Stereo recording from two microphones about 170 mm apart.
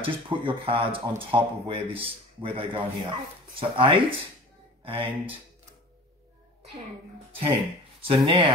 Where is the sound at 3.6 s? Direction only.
30° right (ahead or behind).